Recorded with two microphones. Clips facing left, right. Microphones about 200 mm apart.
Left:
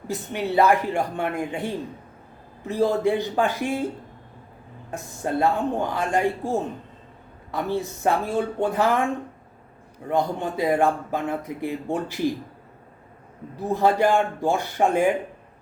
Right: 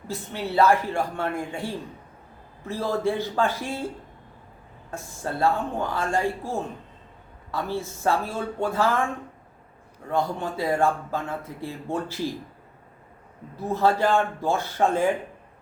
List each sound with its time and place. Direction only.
0.1 s speech: 15° left (ahead or behind)
4.9 s speech: 15° left (ahead or behind)
10.1 s speech: 15° left (ahead or behind)
13.6 s speech: 15° left (ahead or behind)